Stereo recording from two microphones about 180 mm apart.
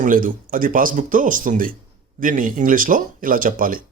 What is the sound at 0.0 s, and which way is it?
Speech, 50° right (ahead or behind).